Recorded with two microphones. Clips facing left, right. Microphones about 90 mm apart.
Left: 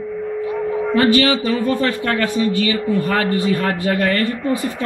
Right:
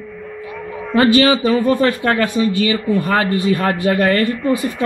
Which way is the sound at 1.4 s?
15° right (ahead or behind).